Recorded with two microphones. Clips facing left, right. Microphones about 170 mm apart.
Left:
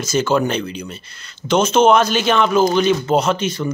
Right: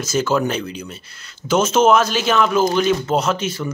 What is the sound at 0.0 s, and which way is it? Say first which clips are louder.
A man's voice: left 2 dB; 5° right (ahead or behind).